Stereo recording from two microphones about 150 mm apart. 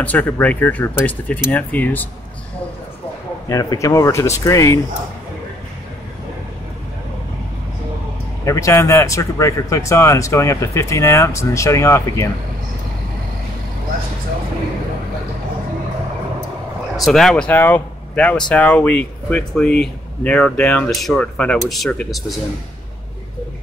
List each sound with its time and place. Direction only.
0.0 s speech: 10° left (ahead or behind)
3.4 s speech: 20° left (ahead or behind)
8.5 s speech: 20° left (ahead or behind)
17.0 s speech: centre (ahead or behind)